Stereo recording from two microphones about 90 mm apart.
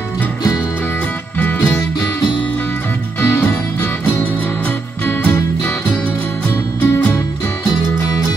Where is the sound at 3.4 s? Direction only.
20° left (ahead or behind).